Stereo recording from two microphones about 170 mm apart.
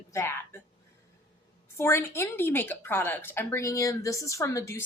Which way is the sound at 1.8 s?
15° left (ahead or behind).